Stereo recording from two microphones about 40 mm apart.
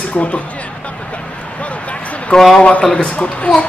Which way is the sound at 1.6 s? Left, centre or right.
Left.